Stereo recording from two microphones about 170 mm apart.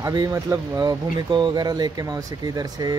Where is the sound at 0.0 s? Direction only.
20° right (ahead or behind).